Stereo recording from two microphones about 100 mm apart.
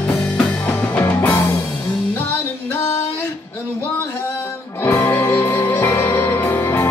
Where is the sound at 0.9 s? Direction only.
15° left (ahead or behind).